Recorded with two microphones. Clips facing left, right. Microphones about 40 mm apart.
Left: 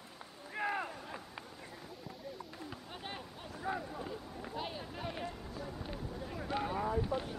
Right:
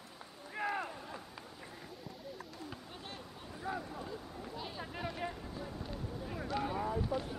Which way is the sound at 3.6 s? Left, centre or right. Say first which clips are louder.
Left 2 dB; centre.